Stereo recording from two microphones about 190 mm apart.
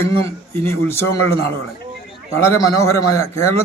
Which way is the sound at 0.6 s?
10° left (ahead or behind).